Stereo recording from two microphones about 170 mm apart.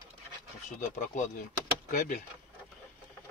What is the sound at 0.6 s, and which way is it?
Speech, 45° left (ahead or behind).